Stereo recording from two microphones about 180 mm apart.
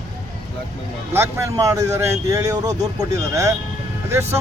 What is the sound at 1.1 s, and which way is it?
Speech, 15° right (ahead or behind).